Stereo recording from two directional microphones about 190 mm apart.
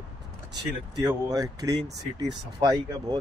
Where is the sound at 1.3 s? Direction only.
20° right (ahead or behind).